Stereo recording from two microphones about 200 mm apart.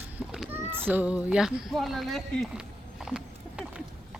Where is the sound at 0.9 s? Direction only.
5° right (ahead or behind).